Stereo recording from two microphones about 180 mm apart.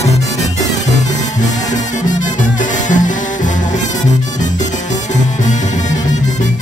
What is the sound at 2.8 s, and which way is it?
Music, 45° left (ahead or behind).